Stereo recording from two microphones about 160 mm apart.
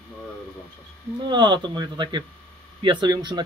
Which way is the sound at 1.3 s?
30° right (ahead or behind).